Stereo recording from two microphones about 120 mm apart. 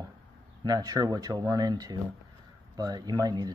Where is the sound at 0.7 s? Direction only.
30° right (ahead or behind).